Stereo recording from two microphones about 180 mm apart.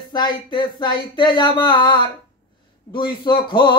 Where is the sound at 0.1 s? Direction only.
25° left (ahead or behind).